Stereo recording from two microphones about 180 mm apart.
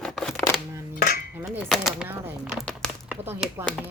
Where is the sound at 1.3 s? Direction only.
10° right (ahead or behind).